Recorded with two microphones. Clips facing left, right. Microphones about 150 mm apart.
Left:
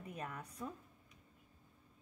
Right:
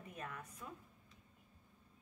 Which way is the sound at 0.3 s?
35° left (ahead or behind).